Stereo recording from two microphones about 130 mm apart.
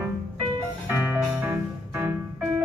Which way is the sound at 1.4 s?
15° right (ahead or behind).